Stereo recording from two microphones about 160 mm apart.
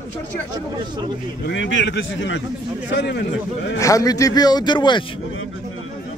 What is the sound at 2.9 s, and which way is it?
Speech, 90° left.